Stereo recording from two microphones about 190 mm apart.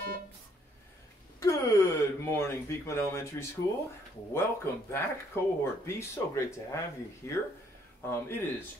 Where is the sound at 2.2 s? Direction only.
15° left (ahead or behind).